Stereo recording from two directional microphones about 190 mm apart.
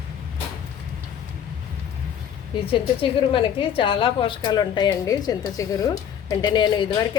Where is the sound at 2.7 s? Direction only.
25° left (ahead or behind).